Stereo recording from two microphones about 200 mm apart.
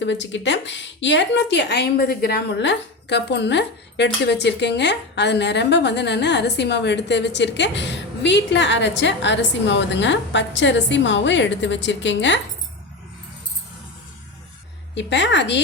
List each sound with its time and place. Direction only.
0.0 s a woman's voice: 65° left (ahead or behind)
14.9 s a woman's voice: 60° left (ahead or behind)